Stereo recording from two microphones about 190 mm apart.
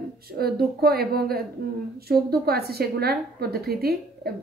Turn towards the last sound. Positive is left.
turn(degrees=-55)  # may be behind; listen again after turning